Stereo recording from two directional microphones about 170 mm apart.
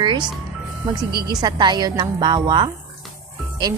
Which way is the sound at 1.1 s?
25° right (ahead or behind).